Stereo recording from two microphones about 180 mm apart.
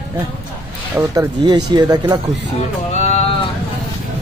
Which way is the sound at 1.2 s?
25° right (ahead or behind).